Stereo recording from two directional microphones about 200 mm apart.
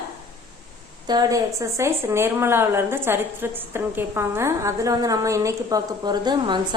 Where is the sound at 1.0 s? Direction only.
20° right (ahead or behind).